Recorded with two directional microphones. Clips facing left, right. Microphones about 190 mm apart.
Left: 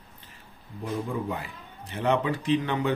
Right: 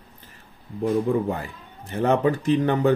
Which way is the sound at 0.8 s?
45° right (ahead or behind).